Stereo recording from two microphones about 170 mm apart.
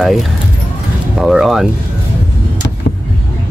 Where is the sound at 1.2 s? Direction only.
Centre (ahead or behind).